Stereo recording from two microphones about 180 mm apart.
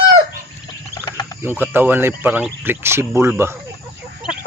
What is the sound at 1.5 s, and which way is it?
Speech, 10° right (ahead or behind).